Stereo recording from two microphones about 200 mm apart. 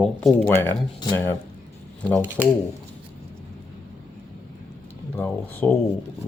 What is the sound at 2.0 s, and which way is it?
Speech, 5° left (ahead or behind).